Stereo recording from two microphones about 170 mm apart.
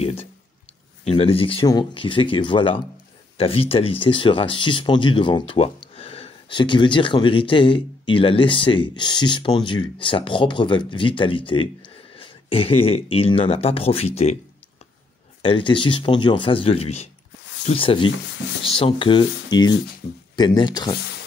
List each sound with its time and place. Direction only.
0.0 s a sound: 35° left (ahead or behind)
1.0 s speech: 35° left (ahead or behind)
15.4 s speech: 30° left (ahead or behind)